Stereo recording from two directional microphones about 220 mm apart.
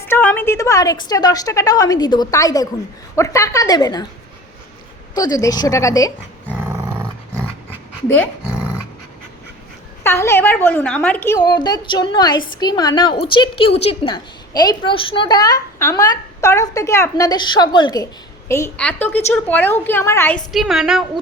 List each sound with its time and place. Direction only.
0.1 s a woman's voice: 10° left (ahead or behind)
5.1 s a woman's voice: 15° left (ahead or behind)
8.0 s a woman's voice: 10° left (ahead or behind)
8.5 s dog: 5° right (ahead or behind)
10.0 s a woman's voice: 10° left (ahead or behind)